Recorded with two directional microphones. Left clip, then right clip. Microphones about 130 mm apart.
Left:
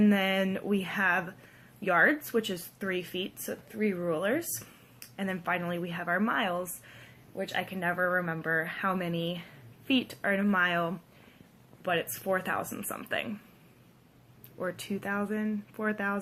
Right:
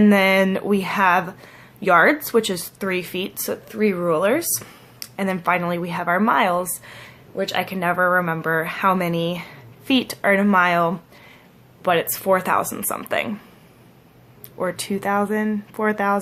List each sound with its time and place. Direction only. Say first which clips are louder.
0.0 s speech: right 12 dB; 35° right (ahead or behind)
11.8 s speech: right 11 dB; 50° right (ahead or behind)
14.6 s speech: right 11 dB; 35° right (ahead or behind)